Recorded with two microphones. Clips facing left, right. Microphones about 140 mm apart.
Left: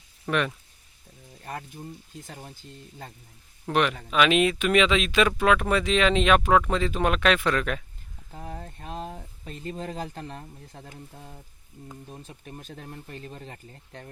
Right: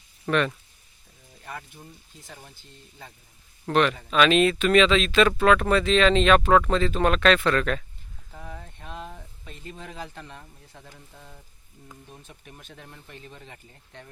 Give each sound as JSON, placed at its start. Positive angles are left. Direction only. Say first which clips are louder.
{"t": 0.3, "sound": "speech", "louder": "right 2 dB", "side_deg": 10}
{"t": 1.5, "sound": "speech", "louder": "left 3 dB", "side_deg": 40}
{"t": 3.7, "sound": "speech", "louder": "right 2 dB", "side_deg": 10}
{"t": 8.3, "sound": "speech", "louder": "left 3 dB", "side_deg": 40}